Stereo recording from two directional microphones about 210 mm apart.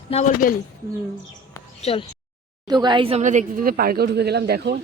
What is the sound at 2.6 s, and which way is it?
A woman's voice, 20° right (ahead or behind).